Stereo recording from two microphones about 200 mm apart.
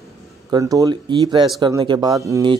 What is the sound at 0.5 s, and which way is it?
Speech, 20° right (ahead or behind).